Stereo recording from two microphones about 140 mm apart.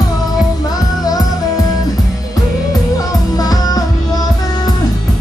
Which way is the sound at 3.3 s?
25° left (ahead or behind).